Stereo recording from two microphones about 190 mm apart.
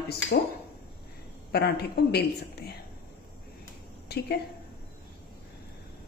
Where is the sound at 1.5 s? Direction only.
60° left (ahead or behind).